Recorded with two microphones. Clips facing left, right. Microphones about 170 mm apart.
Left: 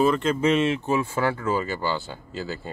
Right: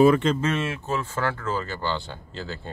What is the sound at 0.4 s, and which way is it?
Speech, 15° left (ahead or behind).